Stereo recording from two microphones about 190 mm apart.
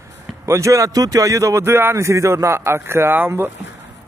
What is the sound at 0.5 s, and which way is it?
Speech, 15° right (ahead or behind).